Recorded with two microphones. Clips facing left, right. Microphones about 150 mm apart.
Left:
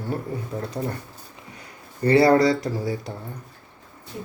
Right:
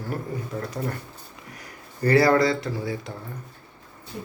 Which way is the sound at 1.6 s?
30° left (ahead or behind).